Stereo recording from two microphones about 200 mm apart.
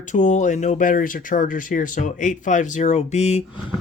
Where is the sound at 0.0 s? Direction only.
35° left (ahead or behind).